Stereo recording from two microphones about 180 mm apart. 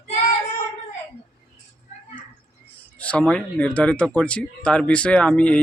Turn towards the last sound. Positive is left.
turn(degrees=5)  # may be behind; listen again after turning